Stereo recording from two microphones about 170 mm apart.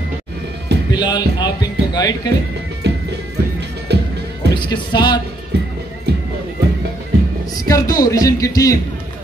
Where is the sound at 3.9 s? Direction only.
75° right (ahead or behind).